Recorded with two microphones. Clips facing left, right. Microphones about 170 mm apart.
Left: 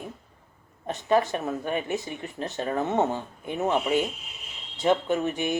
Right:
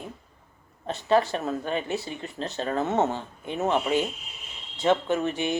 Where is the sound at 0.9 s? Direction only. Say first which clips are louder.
Right 1 dB; 15° left (ahead or behind).